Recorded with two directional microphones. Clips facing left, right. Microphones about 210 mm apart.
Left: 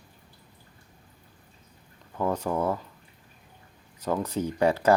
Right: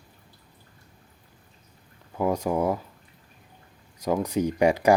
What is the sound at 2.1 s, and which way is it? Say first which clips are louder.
Speech: right 3 dB; 10° right (ahead or behind).